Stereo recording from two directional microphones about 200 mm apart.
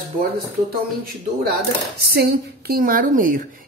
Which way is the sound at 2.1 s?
50° right (ahead or behind).